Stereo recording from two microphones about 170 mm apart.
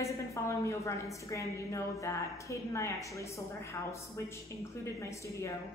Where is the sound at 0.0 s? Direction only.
15° left (ahead or behind).